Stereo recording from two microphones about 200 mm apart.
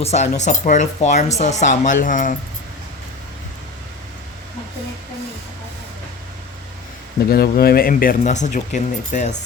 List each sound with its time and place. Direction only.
0.0 s speech: 35° left (ahead or behind)
7.3 s speech: 50° left (ahead or behind)